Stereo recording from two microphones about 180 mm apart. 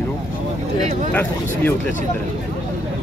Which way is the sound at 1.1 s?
10° left (ahead or behind).